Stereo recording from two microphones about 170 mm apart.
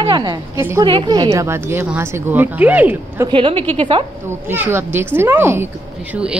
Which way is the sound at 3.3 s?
30° right (ahead or behind).